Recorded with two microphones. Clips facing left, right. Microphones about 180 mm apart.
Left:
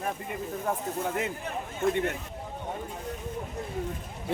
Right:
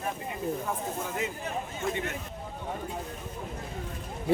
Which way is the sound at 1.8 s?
60° left (ahead or behind).